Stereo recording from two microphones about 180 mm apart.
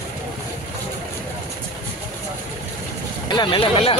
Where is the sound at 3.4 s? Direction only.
30° left (ahead or behind).